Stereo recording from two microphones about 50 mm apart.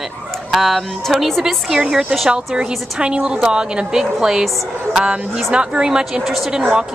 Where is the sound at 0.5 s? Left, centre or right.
Centre.